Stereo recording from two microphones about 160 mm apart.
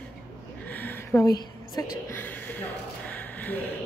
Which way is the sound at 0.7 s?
10° left (ahead or behind).